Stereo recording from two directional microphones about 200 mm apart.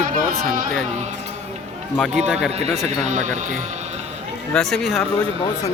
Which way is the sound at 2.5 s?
35° right (ahead or behind).